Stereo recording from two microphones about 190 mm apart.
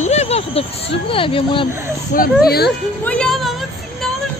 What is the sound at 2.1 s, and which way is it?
Speech, 55° left (ahead or behind).